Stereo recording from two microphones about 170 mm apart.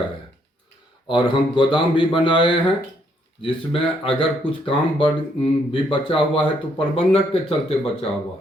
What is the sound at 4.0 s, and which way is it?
A man's voice, 30° left (ahead or behind).